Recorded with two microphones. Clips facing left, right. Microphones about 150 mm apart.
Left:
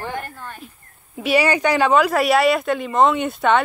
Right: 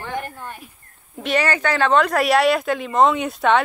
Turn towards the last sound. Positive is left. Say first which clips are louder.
# even
turn(degrees=0)  # may be behind; listen again after turning